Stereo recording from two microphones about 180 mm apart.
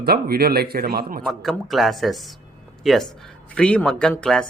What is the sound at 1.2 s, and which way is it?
Speech, centre (ahead or behind).